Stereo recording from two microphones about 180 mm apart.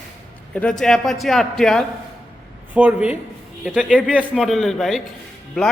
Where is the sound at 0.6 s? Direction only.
5° left (ahead or behind).